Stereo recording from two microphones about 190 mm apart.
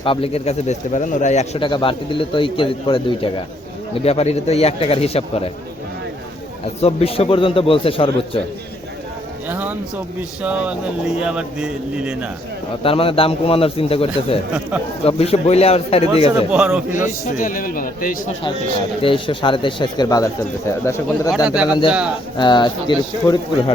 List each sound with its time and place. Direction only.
0.0 s a man's voice: 30° left (ahead or behind)
6.8 s speech: 30° left (ahead or behind)
9.5 s a sound: 10° right (ahead or behind)
10.2 s speech: 10° right (ahead or behind)
12.8 s a man's voice: 30° left (ahead or behind)
16.3 s speech: 5° right (ahead or behind)
17.3 s a man's voice: 45° left (ahead or behind)
19.0 s speech: 25° left (ahead or behind)
21.3 s speech: 5° right (ahead or behind)
22.4 s speech: 25° left (ahead or behind)